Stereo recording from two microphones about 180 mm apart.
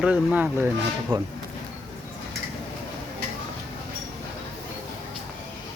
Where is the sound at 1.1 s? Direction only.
25° right (ahead or behind).